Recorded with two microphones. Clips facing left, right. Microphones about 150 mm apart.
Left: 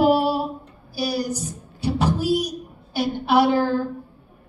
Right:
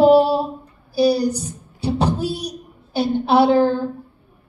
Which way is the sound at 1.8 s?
30° right (ahead or behind).